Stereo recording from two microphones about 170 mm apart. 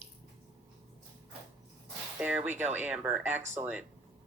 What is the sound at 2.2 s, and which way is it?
A woman's voice, 10° right (ahead or behind).